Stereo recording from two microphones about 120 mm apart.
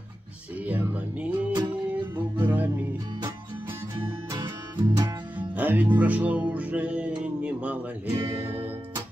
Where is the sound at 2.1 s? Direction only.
35° right (ahead or behind).